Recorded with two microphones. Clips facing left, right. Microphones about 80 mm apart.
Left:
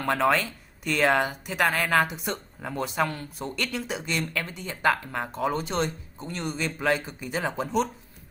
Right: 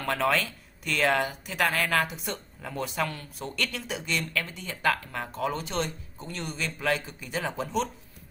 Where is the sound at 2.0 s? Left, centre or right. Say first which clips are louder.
Left 3 dB; centre.